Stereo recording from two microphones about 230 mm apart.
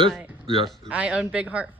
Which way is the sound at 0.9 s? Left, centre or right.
Centre.